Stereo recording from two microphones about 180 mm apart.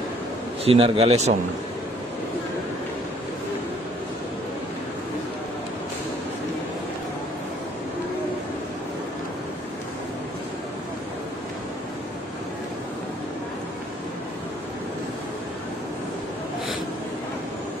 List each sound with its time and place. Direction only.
0.7 s a man's voice: 30° right (ahead or behind)